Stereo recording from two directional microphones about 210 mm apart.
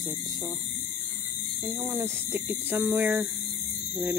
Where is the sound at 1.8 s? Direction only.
10° right (ahead or behind).